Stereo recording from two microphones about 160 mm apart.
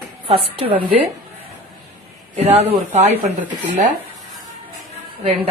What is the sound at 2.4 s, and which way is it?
Speech, 40° right (ahead or behind).